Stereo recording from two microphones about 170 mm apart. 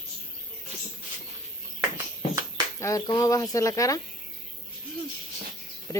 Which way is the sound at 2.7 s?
20° left (ahead or behind).